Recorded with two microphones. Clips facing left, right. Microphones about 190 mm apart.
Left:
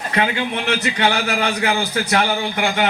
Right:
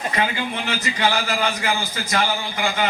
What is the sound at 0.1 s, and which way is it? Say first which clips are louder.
A man's voice: left 6 dB; 60° left (ahead or behind).